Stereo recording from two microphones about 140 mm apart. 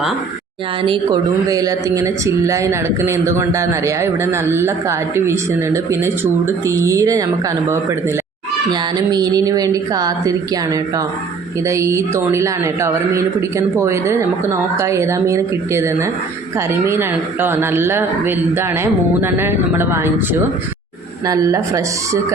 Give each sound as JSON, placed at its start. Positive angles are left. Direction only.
{"t": 1.5, "sound": "speech", "side_deg": -25}
{"t": 8.7, "sound": "speech", "side_deg": -30}
{"t": 21.2, "sound": "speech", "side_deg": -25}